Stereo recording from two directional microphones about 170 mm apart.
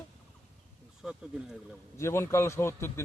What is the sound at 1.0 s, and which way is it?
Speech, centre (ahead or behind).